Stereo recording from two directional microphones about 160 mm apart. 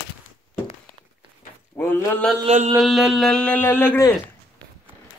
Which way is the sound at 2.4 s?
40° right (ahead or behind).